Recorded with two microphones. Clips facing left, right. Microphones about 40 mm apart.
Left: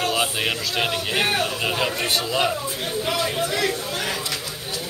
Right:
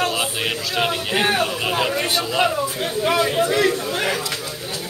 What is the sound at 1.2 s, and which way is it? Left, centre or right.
Speech, centre.